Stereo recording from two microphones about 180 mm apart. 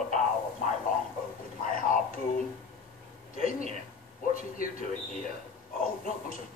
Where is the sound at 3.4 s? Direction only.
50° left (ahead or behind).